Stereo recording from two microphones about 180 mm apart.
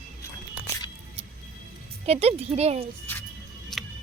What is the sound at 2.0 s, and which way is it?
Speech, 35° right (ahead or behind).